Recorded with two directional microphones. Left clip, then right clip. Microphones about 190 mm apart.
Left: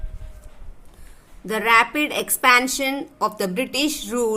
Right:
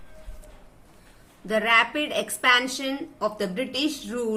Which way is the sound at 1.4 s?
60° left (ahead or behind).